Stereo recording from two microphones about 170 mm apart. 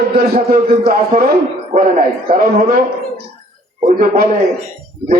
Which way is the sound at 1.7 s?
40° right (ahead or behind).